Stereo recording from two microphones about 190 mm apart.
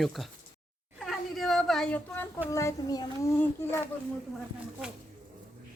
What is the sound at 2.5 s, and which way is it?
Speech, 15° left (ahead or behind).